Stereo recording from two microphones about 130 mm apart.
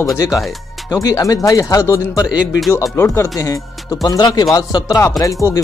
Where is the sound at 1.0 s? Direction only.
25° left (ahead or behind).